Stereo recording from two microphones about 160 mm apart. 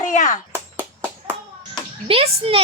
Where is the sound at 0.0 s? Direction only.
50° left (ahead or behind).